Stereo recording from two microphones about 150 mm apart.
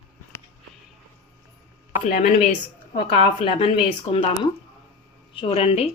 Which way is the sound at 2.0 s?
50° left (ahead or behind).